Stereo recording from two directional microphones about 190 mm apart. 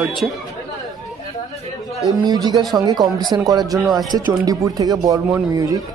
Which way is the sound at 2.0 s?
20° right (ahead or behind).